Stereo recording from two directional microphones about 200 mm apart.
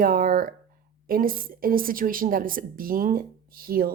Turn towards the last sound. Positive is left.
turn(degrees=-50)  # may be behind; listen again after turning